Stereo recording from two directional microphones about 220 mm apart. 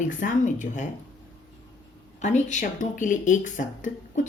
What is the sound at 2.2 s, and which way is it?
Speech, 30° left (ahead or behind).